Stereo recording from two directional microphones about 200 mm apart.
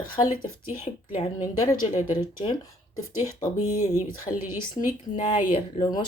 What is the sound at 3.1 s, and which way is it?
Speech, 15° left (ahead or behind).